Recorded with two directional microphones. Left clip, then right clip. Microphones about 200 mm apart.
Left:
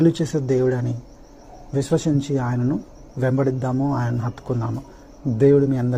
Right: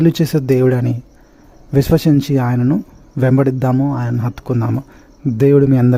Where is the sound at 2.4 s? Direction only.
50° right (ahead or behind).